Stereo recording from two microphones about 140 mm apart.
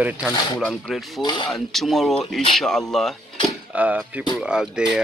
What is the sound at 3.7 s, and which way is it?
Speech, 10° right (ahead or behind).